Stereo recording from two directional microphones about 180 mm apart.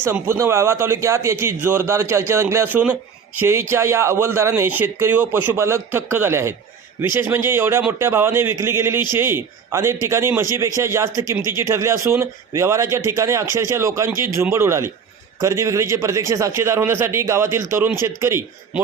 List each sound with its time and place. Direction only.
0.0 s a man's voice: 15° right (ahead or behind)